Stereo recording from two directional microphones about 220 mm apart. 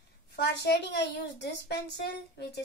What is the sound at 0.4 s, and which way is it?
A woman's voice, 50° left (ahead or behind).